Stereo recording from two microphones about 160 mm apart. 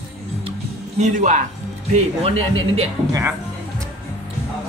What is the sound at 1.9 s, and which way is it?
Speech, 35° right (ahead or behind).